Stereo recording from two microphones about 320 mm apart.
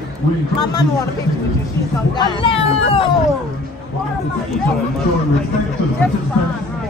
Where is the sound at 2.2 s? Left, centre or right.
Centre.